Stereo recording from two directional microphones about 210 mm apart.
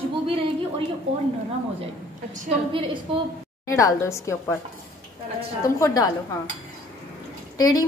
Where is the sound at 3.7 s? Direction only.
15° left (ahead or behind).